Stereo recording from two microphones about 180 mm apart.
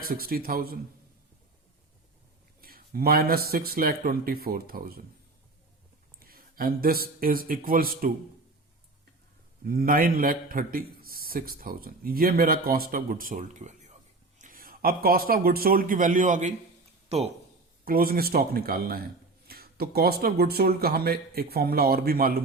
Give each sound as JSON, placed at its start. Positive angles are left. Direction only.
{"t": 0.0, "sound": "speech", "side_deg": -55}
{"t": 2.6, "sound": "speech", "side_deg": -55}
{"t": 6.1, "sound": "a sound", "side_deg": -55}
{"t": 7.2, "sound": "a man's voice", "side_deg": -55}
{"t": 9.6, "sound": "a man's voice", "side_deg": -55}
{"t": 17.8, "sound": "speech", "side_deg": -55}